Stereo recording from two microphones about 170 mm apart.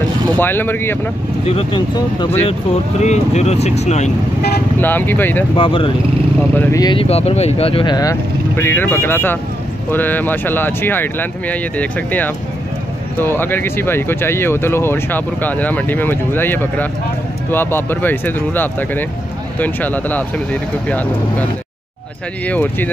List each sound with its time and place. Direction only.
0.4 s speech: 10° left (ahead or behind)
1.5 s speech: 30° left (ahead or behind)
2.4 s speech: 40° left (ahead or behind)
4.7 s speech: 10° left (ahead or behind)
5.6 s speech: 30° left (ahead or behind)
6.5 s speech: 10° left (ahead or behind)
6.8 s speech: 30° left (ahead or behind); by 21.5 s 10° left (ahead or behind)
22.5 s speech: 10° left (ahead or behind)